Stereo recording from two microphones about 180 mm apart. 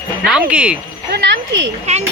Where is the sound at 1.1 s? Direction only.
70° right (ahead or behind).